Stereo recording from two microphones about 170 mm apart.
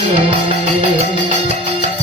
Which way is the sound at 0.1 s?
40° right (ahead or behind).